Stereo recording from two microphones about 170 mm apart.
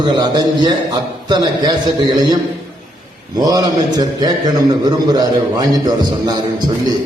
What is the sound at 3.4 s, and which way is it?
A man's voice, 20° right (ahead or behind).